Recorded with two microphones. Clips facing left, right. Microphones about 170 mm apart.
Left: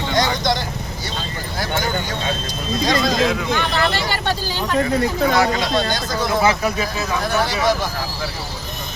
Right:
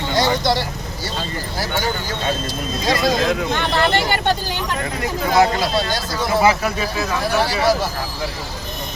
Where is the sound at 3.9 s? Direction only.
55° right (ahead or behind).